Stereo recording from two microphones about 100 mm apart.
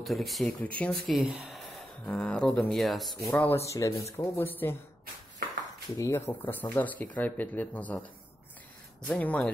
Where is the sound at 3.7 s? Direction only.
35° left (ahead or behind).